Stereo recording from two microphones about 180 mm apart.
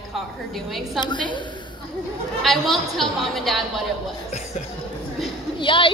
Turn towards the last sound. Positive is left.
turn(degrees=30)  # may be behind; listen again after turning